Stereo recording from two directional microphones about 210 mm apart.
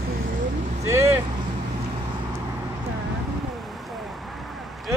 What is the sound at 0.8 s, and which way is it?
Vehicle, 15° right (ahead or behind).